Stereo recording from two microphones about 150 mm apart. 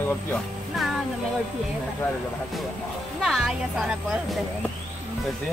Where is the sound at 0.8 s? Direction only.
Centre (ahead or behind).